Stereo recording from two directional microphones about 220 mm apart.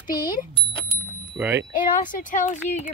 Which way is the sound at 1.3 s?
10° right (ahead or behind).